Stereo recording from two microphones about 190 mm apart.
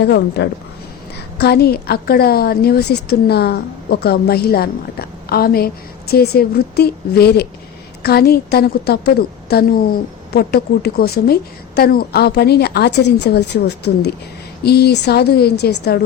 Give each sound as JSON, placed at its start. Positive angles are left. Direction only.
{"t": 0.0, "sound": "a woman's voice", "side_deg": 60}